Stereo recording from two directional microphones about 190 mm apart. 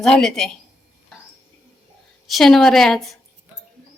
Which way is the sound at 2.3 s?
Centre (ahead or behind).